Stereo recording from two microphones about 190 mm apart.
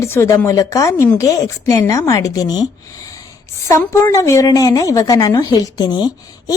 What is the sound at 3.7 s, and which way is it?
Speech, 15° left (ahead or behind).